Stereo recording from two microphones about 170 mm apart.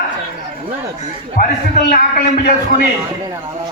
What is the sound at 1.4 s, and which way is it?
A man's voice, 55° left (ahead or behind).